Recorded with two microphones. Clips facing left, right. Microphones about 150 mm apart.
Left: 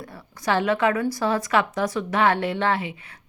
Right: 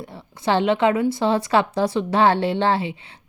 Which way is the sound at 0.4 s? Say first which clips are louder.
Right 3 dB; 25° right (ahead or behind).